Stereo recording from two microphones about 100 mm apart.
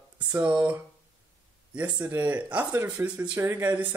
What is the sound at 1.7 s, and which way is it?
Speech, 15° right (ahead or behind).